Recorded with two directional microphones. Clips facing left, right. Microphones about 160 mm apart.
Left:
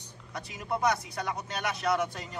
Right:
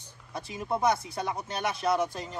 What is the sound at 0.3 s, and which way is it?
Speech, 25° right (ahead or behind).